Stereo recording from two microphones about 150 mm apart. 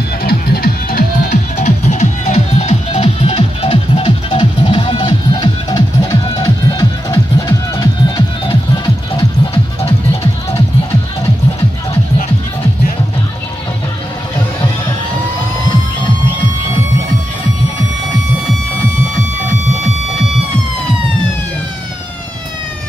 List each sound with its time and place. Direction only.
0.2 s music: 90° left
1.3 s music: 50° left (ahead or behind); by 9.9 s 35° left (ahead or behind)